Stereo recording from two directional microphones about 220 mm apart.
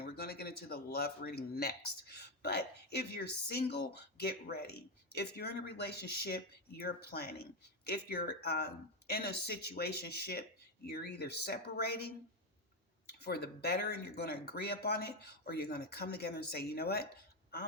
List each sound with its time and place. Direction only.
0.0 s speech: 45° left (ahead or behind)
13.1 s speech: 45° left (ahead or behind)